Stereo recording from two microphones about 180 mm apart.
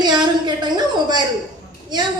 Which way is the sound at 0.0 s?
25° right (ahead or behind).